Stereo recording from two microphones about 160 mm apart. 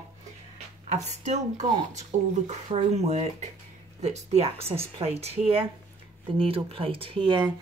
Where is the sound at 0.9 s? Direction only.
45° right (ahead or behind).